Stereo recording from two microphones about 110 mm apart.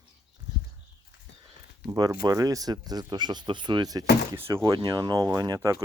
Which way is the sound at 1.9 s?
35° right (ahead or behind).